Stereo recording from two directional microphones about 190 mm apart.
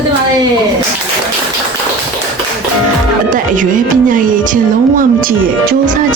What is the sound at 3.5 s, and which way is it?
Music, 45° right (ahead or behind).